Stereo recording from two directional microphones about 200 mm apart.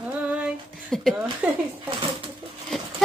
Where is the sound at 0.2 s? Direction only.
5° right (ahead or behind).